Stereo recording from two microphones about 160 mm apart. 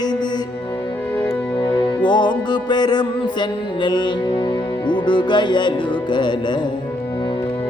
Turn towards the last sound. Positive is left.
turn(degrees=30)  # may be behind; listen again after turning